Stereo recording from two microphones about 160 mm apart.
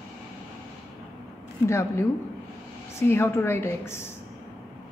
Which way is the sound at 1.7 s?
15° left (ahead or behind).